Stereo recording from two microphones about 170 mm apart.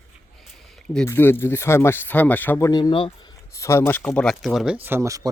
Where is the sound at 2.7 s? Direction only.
25° left (ahead or behind).